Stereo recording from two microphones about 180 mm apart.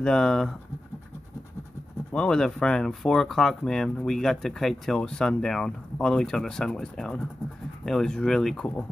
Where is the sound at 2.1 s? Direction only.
5° left (ahead or behind).